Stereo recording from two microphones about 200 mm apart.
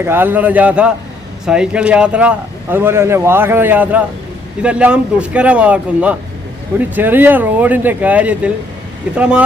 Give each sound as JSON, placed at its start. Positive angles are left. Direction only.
{"t": 0.0, "sound": "speech", "side_deg": -10}